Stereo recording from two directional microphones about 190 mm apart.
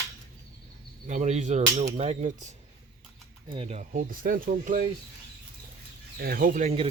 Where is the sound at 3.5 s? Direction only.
30° right (ahead or behind).